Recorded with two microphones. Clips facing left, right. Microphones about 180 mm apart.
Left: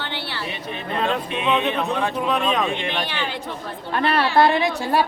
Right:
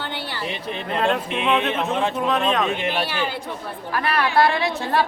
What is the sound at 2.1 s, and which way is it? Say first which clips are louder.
A woman's voice: right 1 dB; centre (ahead or behind).